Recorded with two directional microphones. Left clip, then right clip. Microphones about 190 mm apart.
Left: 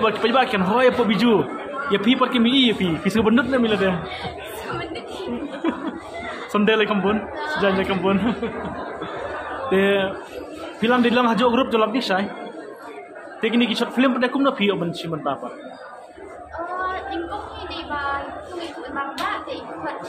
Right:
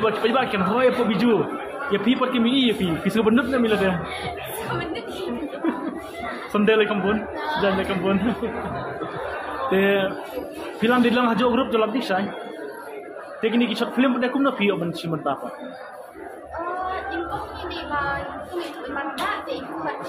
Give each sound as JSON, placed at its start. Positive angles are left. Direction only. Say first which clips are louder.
{"t": 0.0, "sound": "a man's voice", "louder": "left 2 dB", "side_deg": 25}
{"t": 6.5, "sound": "a man's voice", "louder": "even", "side_deg": 15}
{"t": 9.7, "sound": "a man's voice", "louder": "left 1 dB", "side_deg": 10}
{"t": 13.4, "sound": "a man's voice", "louder": "left 2 dB", "side_deg": 20}